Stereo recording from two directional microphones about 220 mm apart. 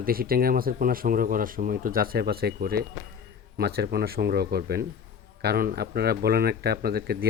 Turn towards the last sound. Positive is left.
turn(degrees=-45)  # may be behind; listen again after turning